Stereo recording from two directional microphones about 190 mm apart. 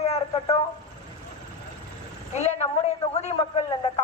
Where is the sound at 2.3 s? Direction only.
35° left (ahead or behind).